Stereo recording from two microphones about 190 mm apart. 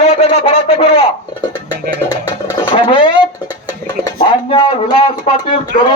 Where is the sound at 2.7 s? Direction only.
25° left (ahead or behind).